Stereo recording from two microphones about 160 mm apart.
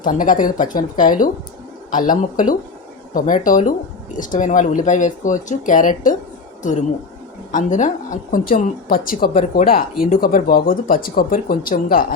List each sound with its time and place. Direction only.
0.0 s speech: 55° left (ahead or behind)